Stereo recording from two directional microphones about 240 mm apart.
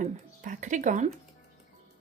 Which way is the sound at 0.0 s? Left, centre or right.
Right.